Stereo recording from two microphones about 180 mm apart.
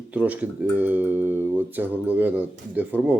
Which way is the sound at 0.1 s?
10° right (ahead or behind).